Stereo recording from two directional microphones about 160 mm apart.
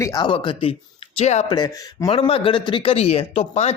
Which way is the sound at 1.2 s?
45° left (ahead or behind).